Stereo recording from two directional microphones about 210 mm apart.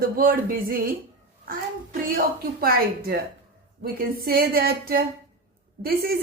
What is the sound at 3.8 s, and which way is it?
Speech, 45° right (ahead or behind).